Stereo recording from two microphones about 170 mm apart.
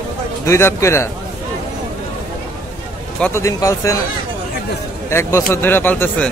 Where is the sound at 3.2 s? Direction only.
15° left (ahead or behind).